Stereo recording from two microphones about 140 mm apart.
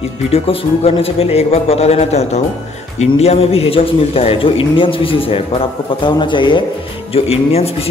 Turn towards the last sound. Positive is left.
turn(degrees=45)  # may be behind; listen again after turning